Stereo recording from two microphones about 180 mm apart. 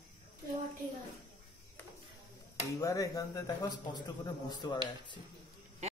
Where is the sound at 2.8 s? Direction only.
20° left (ahead or behind).